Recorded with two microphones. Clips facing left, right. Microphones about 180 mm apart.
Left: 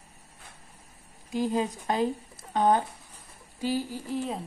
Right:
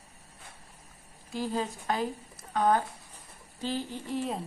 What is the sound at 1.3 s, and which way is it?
A woman's voice, 15° left (ahead or behind).